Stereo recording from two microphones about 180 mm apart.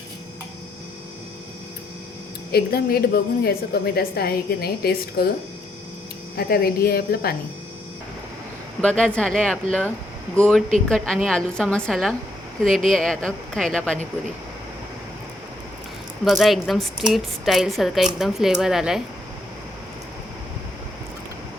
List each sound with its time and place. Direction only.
2.5 s a woman's voice: 60° left (ahead or behind)
6.3 s a woman's voice: 60° left (ahead or behind)
8.8 s a woman's voice: 5° left (ahead or behind)
16.2 s a woman's voice: centre (ahead or behind)